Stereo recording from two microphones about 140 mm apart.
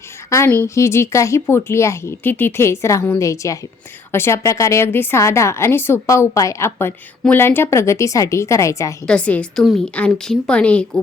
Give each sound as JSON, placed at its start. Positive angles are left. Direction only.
{"t": 0.3, "sound": "a woman's voice", "side_deg": 15}
{"t": 9.0, "sound": "speech", "side_deg": 10}